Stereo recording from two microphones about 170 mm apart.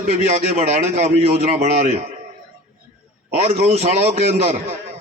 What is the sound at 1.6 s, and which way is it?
Speech, 40° right (ahead or behind).